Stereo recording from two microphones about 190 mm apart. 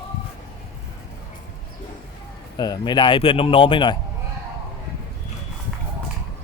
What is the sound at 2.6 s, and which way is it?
Speech, 20° left (ahead or behind).